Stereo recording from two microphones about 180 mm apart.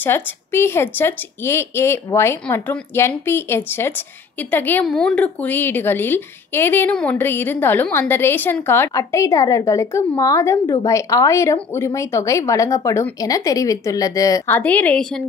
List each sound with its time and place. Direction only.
0.0 s a woman's voice: 15° left (ahead or behind)